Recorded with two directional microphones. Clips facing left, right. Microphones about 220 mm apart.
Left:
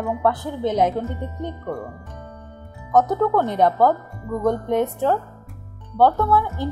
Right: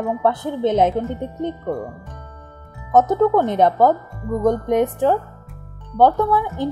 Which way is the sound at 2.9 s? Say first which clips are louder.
Right 3 dB; 20° right (ahead or behind).